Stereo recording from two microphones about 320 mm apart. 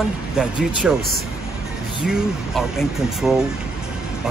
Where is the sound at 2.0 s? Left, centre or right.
Centre.